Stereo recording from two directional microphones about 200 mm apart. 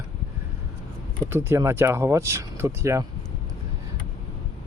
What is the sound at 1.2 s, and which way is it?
Speech, 15° right (ahead or behind).